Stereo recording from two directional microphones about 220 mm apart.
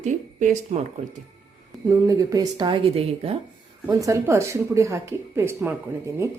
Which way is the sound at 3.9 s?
15° right (ahead or behind).